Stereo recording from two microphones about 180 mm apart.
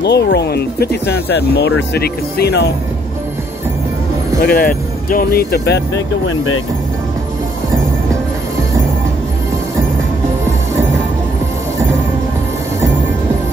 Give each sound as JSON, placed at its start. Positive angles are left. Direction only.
{"t": 0.0, "sound": "speech", "side_deg": 70}
{"t": 4.4, "sound": "speech", "side_deg": 55}